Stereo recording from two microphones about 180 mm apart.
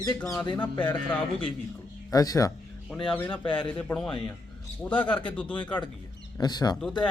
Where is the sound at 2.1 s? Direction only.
20° left (ahead or behind).